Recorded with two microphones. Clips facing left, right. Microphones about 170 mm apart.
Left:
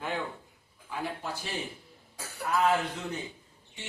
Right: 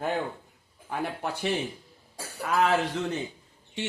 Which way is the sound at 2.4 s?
90° right.